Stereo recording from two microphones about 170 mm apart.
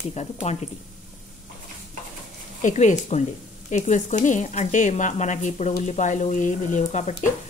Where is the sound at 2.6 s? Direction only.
50° left (ahead or behind).